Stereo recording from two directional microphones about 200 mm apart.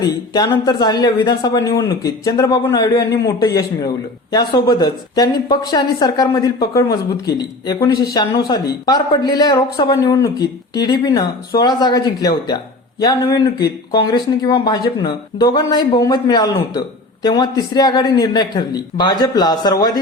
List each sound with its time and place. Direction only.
0.0 s speech: 20° left (ahead or behind)